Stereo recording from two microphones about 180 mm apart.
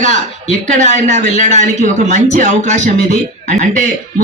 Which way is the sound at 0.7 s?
40° right (ahead or behind).